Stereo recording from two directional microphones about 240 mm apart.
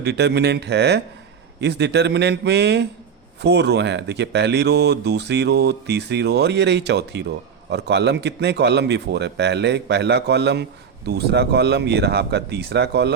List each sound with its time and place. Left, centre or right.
0.0 s speech: right